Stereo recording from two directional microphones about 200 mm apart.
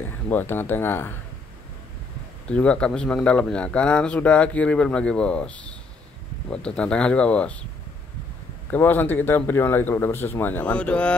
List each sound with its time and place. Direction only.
0.0 s speech: 10° left (ahead or behind)
2.4 s speech: 5° left (ahead or behind)
8.7 s speech: 10° left (ahead or behind)